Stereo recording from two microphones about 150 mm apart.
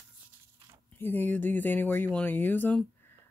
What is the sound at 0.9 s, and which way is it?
Speech, 15° left (ahead or behind).